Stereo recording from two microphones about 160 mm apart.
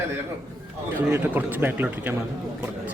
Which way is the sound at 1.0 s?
10° right (ahead or behind).